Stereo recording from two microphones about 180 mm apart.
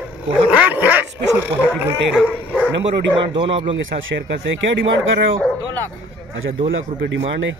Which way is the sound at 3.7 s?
90° right.